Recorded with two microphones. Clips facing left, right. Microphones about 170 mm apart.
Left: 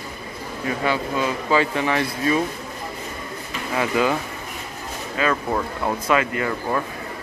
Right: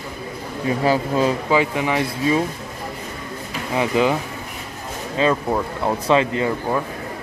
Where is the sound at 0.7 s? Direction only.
35° right (ahead or behind).